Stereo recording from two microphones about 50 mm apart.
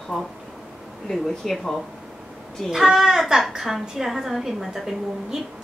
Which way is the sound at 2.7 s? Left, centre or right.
Centre.